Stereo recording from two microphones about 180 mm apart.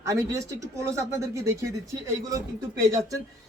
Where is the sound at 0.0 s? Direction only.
15° right (ahead or behind).